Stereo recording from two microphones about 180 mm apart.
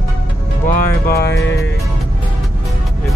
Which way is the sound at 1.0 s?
60° left (ahead or behind).